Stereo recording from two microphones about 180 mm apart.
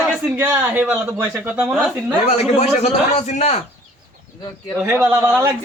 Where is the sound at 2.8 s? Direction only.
40° left (ahead or behind).